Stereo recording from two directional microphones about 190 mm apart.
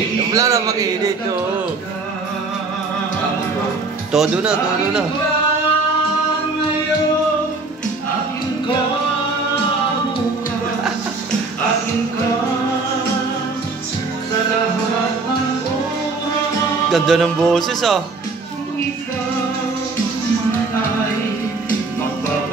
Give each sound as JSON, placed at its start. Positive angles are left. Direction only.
{"t": 0.3, "sound": "a man's voice", "side_deg": -15}
{"t": 4.1, "sound": "speech", "side_deg": -5}
{"t": 16.9, "sound": "speech", "side_deg": 0}